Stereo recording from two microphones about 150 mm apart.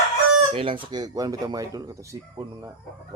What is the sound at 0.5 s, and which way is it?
Speech, 35° right (ahead or behind).